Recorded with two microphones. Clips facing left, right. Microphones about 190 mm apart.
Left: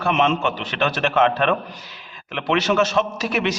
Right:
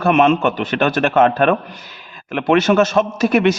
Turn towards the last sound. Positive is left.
turn(degrees=-50)  # may be behind; listen again after turning